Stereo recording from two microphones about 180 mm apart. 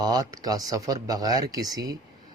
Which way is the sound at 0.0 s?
20° right (ahead or behind).